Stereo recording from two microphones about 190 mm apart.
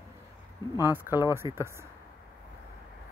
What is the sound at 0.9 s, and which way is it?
Speech, 10° right (ahead or behind).